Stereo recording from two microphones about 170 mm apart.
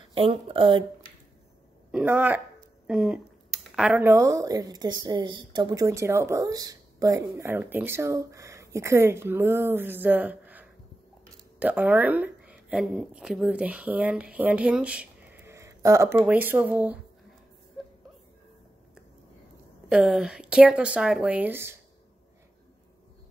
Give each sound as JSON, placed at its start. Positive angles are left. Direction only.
{"t": 0.1, "sound": "speech", "side_deg": -35}
{"t": 1.9, "sound": "speech", "side_deg": -5}
{"t": 19.9, "sound": "speech", "side_deg": -5}